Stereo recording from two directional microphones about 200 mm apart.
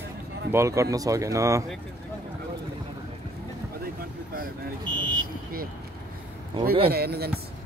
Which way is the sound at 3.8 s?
45° right (ahead or behind).